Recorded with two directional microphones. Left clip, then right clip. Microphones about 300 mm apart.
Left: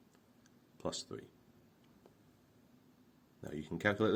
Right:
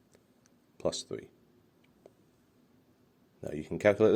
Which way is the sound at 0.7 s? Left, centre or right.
Right.